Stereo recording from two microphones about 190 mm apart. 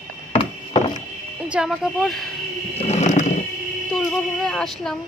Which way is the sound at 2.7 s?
35° left (ahead or behind).